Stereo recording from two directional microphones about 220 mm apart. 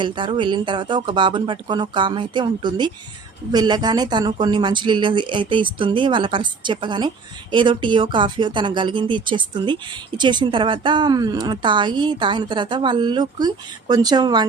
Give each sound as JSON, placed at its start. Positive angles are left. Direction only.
{"t": 0.0, "sound": "a woman's voice", "side_deg": -20}